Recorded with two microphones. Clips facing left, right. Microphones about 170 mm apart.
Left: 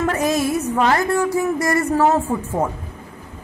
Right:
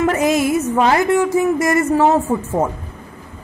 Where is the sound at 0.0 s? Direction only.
20° right (ahead or behind).